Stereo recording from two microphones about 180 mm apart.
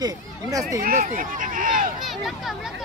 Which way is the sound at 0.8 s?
50° right (ahead or behind).